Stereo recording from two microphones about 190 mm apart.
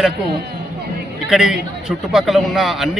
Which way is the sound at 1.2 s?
5° right (ahead or behind).